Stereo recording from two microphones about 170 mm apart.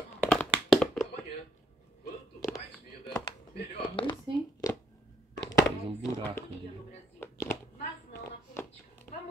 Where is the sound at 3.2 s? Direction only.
25° left (ahead or behind).